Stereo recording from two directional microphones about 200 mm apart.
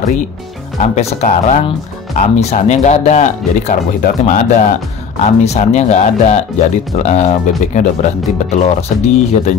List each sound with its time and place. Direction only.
0.7 s speech: 35° left (ahead or behind)